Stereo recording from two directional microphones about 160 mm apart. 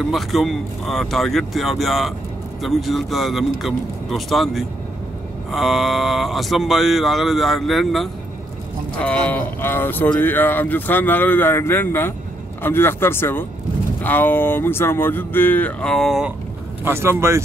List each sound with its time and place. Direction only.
0.1 s speech: centre (ahead or behind)
16.8 s speech: 15° right (ahead or behind)